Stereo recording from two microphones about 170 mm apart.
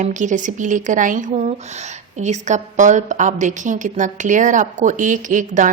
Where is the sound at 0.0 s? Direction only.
45° right (ahead or behind).